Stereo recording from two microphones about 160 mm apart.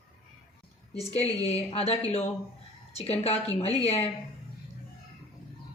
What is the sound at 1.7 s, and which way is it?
Speech, 40° left (ahead or behind).